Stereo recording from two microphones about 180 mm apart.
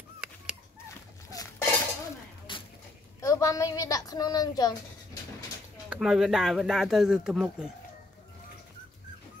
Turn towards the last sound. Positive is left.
turn(degrees=-5)  # may be behind; listen again after turning